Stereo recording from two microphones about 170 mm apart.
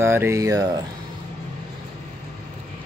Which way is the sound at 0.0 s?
15° right (ahead or behind).